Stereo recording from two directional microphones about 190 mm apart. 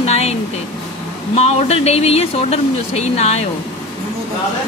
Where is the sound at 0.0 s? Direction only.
35° left (ahead or behind).